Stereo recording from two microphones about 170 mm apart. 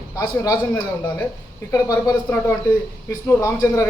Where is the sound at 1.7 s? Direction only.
20° left (ahead or behind).